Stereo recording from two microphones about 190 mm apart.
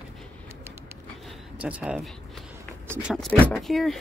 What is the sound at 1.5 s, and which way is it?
Speech, 5° right (ahead or behind).